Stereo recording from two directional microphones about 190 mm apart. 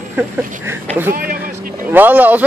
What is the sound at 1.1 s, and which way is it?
Speech, 50° right (ahead or behind).